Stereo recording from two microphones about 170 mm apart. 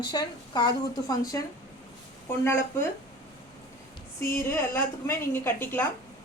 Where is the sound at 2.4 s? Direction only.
15° left (ahead or behind).